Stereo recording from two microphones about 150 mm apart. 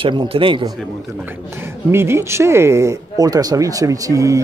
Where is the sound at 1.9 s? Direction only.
15° right (ahead or behind).